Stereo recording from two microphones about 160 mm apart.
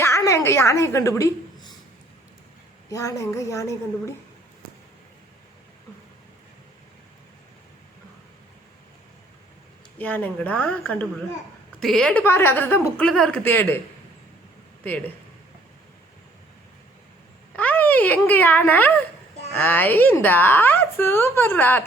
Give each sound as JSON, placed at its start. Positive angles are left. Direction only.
{"t": 0.0, "sound": "a woman's voice", "side_deg": 20}
{"t": 2.9, "sound": "speech", "side_deg": 20}
{"t": 10.0, "sound": "a woman's voice", "side_deg": 10}
{"t": 14.8, "sound": "a woman's voice", "side_deg": 10}
{"t": 17.6, "sound": "a child's voice", "side_deg": 10}